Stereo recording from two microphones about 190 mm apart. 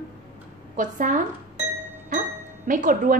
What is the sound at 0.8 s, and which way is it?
Speech, 40° right (ahead or behind).